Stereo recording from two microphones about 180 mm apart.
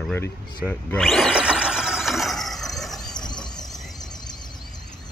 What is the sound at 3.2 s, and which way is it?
Vehicle, 25° left (ahead or behind).